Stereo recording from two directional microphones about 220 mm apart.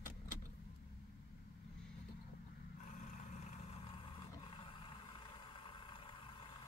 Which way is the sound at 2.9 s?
35° left (ahead or behind).